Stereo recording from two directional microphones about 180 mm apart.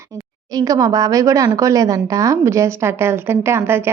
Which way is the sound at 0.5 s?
20° right (ahead or behind).